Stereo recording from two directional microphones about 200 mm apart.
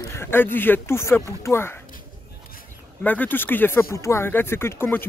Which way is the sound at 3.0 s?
10° left (ahead or behind).